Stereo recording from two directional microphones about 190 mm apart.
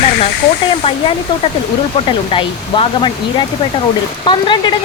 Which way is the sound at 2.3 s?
25° left (ahead or behind).